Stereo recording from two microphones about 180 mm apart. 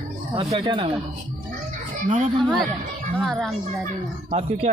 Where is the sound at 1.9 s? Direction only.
45° right (ahead or behind).